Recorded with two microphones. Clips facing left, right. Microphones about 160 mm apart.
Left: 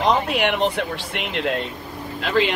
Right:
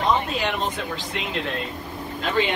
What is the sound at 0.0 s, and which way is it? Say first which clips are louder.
Speech: left 3 dB; 85° left.